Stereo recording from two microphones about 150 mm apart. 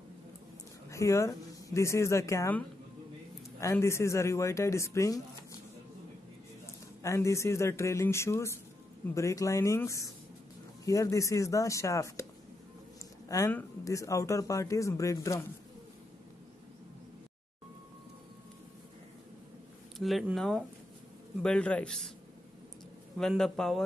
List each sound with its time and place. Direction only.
0.8 s speech: 20° left (ahead or behind)
7.0 s speech: 20° left (ahead or behind)
13.5 s speech: 15° left (ahead or behind)
20.0 s a man's voice: centre (ahead or behind)
23.1 s a man's voice: 5° left (ahead or behind)